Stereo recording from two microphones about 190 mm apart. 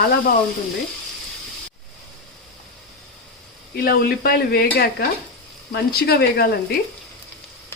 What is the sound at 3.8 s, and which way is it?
Stir, 55° left (ahead or behind).